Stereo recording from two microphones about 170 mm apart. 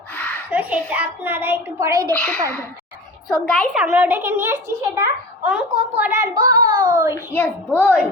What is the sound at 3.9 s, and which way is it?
A child's voice, 10° right (ahead or behind).